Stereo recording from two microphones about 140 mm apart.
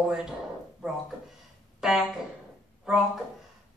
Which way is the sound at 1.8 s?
5° right (ahead or behind).